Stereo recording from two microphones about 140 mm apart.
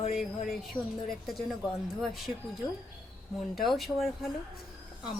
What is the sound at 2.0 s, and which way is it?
Speech, centre (ahead or behind).